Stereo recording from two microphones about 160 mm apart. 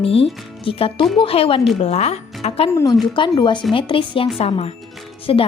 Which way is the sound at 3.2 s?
30° left (ahead or behind).